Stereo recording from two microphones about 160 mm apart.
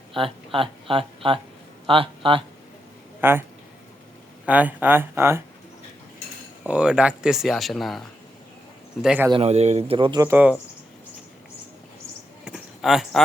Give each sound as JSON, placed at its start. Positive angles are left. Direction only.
{"t": 0.1, "sound": "speech", "side_deg": -35}
{"t": 3.2, "sound": "speech", "side_deg": -15}
{"t": 4.4, "sound": "speech", "side_deg": -10}
{"t": 6.7, "sound": "speech", "side_deg": -5}
{"t": 9.3, "sound": "speech", "side_deg": -40}
{"t": 10.2, "sound": "speech", "side_deg": -15}
{"t": 12.5, "sound": "a sound", "side_deg": -5}